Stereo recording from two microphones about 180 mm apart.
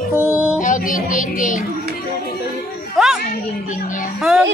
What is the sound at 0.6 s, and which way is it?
Speech, 45° left (ahead or behind).